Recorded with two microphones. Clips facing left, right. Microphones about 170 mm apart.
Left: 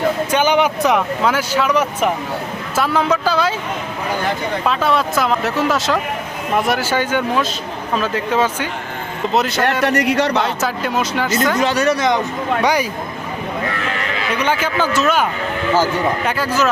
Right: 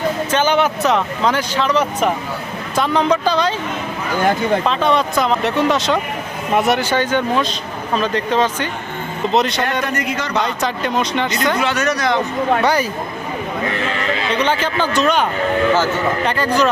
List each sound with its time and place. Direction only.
0.3 s speech: 10° left (ahead or behind)
4.6 s speech: 5° left (ahead or behind)
9.8 s speech: 75° left (ahead or behind)
10.4 s speech: 5° left (ahead or behind)
11.6 s speech: 35° left (ahead or behind)
12.6 s speech: 10° left (ahead or behind)
14.3 s speech: 10° left (ahead or behind)